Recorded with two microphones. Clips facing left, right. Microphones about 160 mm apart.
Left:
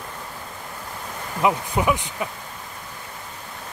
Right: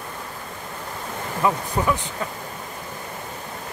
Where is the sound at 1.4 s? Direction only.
15° left (ahead or behind).